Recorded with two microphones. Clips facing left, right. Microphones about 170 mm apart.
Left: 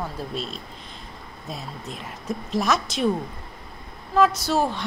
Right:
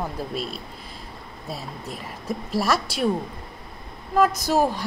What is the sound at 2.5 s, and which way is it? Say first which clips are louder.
Speech: even; 5° right (ahead or behind).